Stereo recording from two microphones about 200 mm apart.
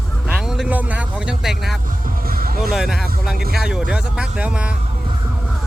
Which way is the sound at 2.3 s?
45° right (ahead or behind).